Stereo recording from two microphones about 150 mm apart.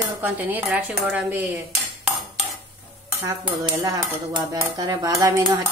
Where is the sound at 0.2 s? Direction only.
10° right (ahead or behind).